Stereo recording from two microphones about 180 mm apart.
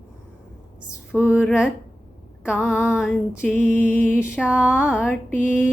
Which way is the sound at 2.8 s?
5° right (ahead or behind).